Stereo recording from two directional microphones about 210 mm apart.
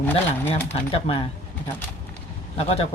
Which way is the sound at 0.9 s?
30° left (ahead or behind).